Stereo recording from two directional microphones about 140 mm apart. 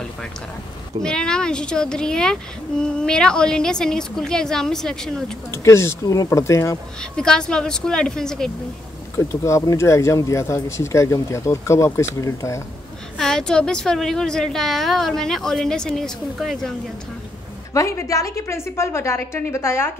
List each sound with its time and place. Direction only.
1.0 s a woman's voice: 5° left (ahead or behind)
5.5 s speech: 20° left (ahead or behind)
7.0 s a woman's voice: 5° left (ahead or behind)
9.1 s speech: 20° left (ahead or behind)
13.2 s a woman's voice: 5° left (ahead or behind)
17.7 s speech: 20° left (ahead or behind)